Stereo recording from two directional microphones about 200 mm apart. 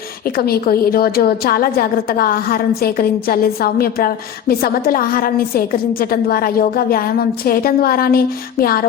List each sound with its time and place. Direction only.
0.3 s a woman's voice: 50° left (ahead or behind)